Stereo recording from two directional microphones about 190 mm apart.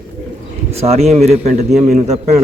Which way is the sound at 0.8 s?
35° right (ahead or behind).